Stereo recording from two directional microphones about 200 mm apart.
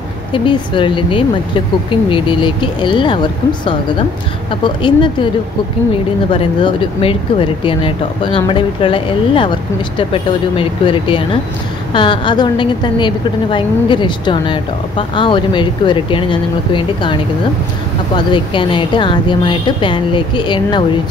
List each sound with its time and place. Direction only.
0.3 s a woman's voice: 25° left (ahead or behind)
6.3 s a woman's voice: 25° left (ahead or behind)